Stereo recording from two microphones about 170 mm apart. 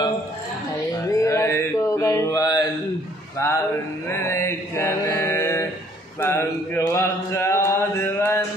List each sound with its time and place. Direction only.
1.0 s mantra: 20° left (ahead or behind)
3.3 s speech: 15° left (ahead or behind)
4.1 s mantra: 15° left (ahead or behind)
6.1 s a sound: 15° left (ahead or behind)